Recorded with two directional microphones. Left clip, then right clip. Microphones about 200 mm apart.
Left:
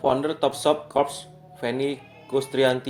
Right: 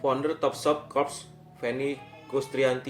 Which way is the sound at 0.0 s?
40° left (ahead or behind).